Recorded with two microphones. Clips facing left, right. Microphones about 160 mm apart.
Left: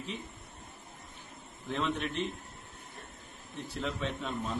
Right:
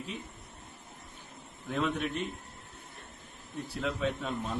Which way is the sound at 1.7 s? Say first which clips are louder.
Right 1 dB; 10° right (ahead or behind).